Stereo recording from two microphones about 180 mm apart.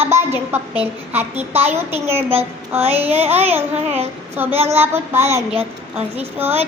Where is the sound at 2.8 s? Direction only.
35° right (ahead or behind).